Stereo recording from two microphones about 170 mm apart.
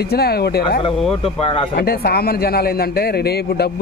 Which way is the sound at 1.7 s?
65° left (ahead or behind).